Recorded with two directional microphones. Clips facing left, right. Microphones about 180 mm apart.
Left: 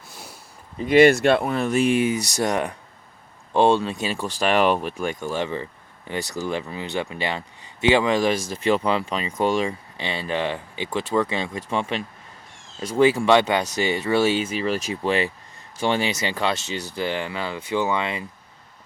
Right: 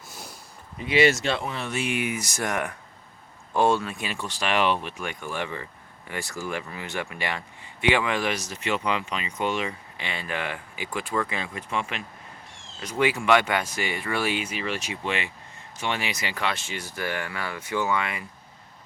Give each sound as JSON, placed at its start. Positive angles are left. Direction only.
{"t": 0.1, "sound": "sniff", "side_deg": 0}
{"t": 0.8, "sound": "speech", "side_deg": 50}